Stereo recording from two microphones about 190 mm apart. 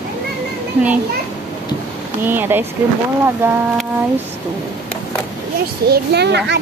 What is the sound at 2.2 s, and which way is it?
A woman's voice, 10° right (ahead or behind).